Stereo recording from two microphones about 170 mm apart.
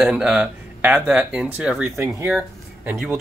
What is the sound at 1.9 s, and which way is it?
Speech, 15° right (ahead or behind).